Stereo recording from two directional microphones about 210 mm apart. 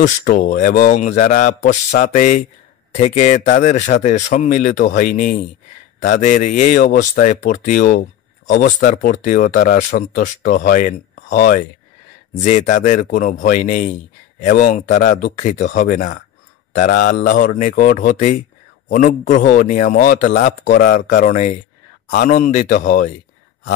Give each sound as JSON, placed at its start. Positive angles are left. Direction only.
{"t": 0.0, "sound": "speech", "side_deg": 40}